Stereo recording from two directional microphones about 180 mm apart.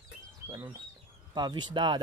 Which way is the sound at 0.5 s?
15° right (ahead or behind).